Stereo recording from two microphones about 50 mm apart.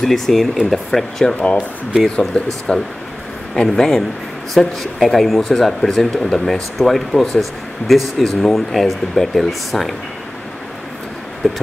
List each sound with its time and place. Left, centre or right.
0.0 s speech: centre
2.1 s speech: left
3.6 s a man's voice: centre
11.4 s speech: centre